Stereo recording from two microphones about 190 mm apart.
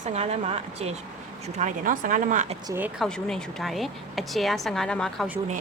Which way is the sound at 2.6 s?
15° right (ahead or behind).